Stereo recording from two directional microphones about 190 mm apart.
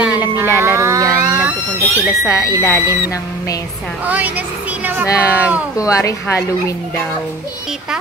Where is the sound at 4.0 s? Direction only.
10° right (ahead or behind).